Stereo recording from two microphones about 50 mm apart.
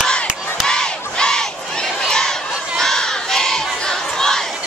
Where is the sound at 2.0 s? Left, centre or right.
Centre.